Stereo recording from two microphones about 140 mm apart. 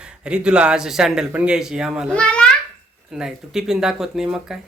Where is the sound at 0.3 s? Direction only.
5° right (ahead or behind).